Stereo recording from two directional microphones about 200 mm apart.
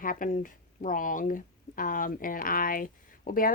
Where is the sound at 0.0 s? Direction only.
45° left (ahead or behind).